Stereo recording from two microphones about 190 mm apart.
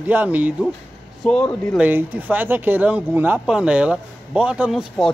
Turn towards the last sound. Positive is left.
turn(degrees=0)  # may be behind; listen again after turning